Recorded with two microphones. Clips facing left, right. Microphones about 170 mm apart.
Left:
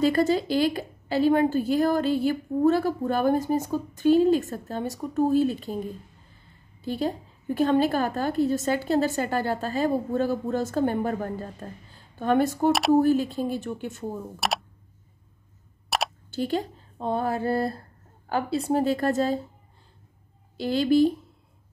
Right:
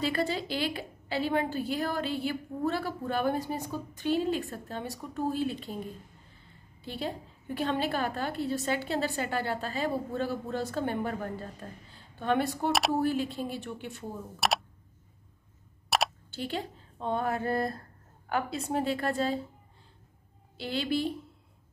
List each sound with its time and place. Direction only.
0.0 s a woman's voice: 45° left (ahead or behind)
6.8 s a woman's voice: 45° left (ahead or behind)
14.4 s a sound: centre (ahead or behind)
15.9 s a sound: centre (ahead or behind)
16.3 s a woman's voice: 40° left (ahead or behind)
20.5 s a woman's voice: 40° left (ahead or behind)